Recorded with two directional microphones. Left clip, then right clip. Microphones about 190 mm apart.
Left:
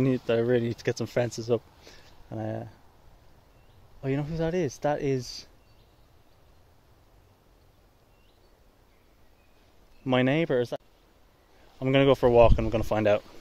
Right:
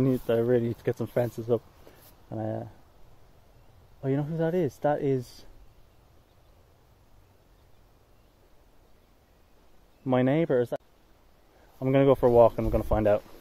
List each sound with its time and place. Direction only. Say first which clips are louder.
0.0 s speech: even; centre (ahead or behind)
2.0 s a sound: right 1 dB; 10° right (ahead or behind)
4.0 s speech: right 1 dB; 15° right (ahead or behind)
10.0 s speech: even; 5° right (ahead or behind)
11.8 s speech: even; 5° right (ahead or behind)